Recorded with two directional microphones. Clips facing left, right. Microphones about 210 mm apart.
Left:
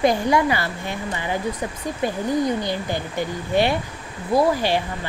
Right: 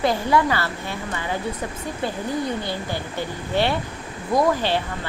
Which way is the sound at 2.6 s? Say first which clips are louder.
Left 3 dB; 15° left (ahead or behind).